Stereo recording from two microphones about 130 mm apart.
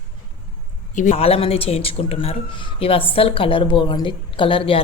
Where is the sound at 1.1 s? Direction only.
50° left (ahead or behind).